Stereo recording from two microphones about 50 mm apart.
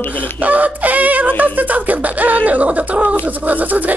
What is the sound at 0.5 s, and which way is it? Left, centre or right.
Speech, right.